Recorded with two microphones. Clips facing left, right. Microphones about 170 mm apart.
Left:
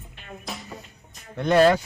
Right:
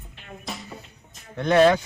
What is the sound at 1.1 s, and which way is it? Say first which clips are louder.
Speech: even; centre (ahead or behind).